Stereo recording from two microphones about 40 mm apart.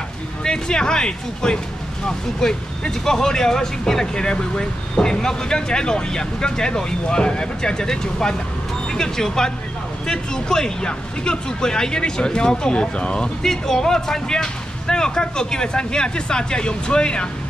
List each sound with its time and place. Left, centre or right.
0.4 s speech: centre
13.4 s speech: centre